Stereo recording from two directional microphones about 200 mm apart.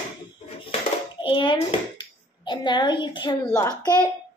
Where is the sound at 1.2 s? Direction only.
25° left (ahead or behind).